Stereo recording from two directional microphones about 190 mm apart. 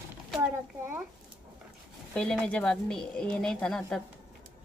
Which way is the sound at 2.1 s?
5° left (ahead or behind).